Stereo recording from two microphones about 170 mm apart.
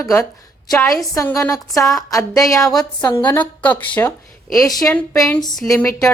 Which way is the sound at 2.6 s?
Centre (ahead or behind).